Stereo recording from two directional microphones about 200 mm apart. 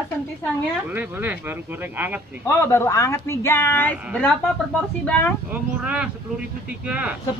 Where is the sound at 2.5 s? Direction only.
15° left (ahead or behind).